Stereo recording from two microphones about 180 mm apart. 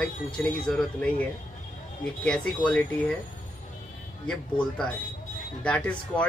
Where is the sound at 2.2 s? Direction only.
5° left (ahead or behind).